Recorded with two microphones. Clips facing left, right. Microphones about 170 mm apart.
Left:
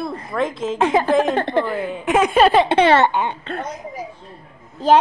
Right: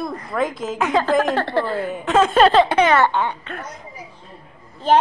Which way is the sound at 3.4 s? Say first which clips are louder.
Left 5 dB; 30° left (ahead or behind).